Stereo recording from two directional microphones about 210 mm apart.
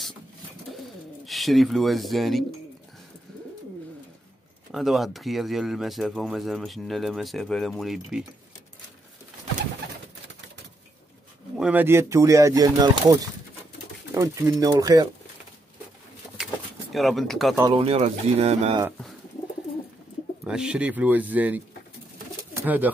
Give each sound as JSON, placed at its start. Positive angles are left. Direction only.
{"t": 1.2, "sound": "speech", "side_deg": 0}
{"t": 4.7, "sound": "speech", "side_deg": 0}
{"t": 11.5, "sound": "speech", "side_deg": -5}
{"t": 14.1, "sound": "speech", "side_deg": -15}
{"t": 16.9, "sound": "speech", "side_deg": 0}
{"t": 17.6, "sound": "speech", "side_deg": -25}
{"t": 20.4, "sound": "speech", "side_deg": -5}